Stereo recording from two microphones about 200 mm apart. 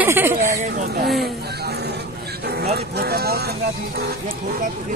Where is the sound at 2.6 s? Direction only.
50° right (ahead or behind).